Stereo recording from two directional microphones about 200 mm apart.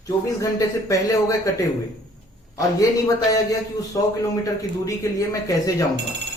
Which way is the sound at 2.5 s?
15° left (ahead or behind).